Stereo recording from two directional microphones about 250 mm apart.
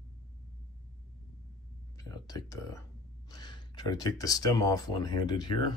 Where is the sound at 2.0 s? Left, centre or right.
Centre.